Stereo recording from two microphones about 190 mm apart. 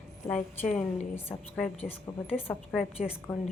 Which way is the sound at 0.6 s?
40° left (ahead or behind).